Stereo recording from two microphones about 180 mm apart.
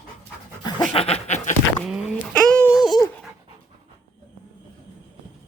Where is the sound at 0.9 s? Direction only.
35° left (ahead or behind).